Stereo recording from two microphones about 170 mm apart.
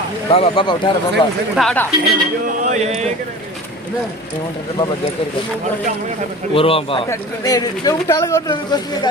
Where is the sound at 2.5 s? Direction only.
45° right (ahead or behind).